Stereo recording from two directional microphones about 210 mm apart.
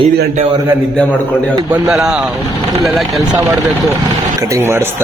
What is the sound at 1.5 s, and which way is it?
A man's voice, 5° right (ahead or behind).